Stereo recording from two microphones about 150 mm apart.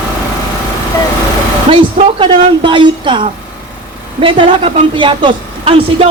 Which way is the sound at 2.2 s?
35° right (ahead or behind).